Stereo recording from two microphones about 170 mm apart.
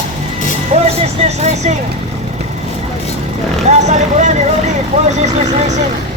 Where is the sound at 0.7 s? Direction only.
40° right (ahead or behind).